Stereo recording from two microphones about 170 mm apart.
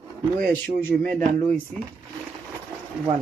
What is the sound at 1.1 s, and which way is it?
Speech, 50° right (ahead or behind).